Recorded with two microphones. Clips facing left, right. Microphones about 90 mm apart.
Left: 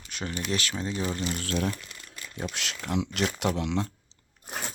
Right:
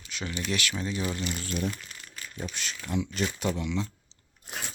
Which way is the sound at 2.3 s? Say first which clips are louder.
Left 3 dB; 80° left.